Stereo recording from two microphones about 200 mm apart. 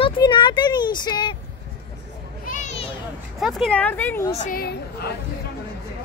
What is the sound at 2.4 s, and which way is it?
Children playing, 35° left (ahead or behind).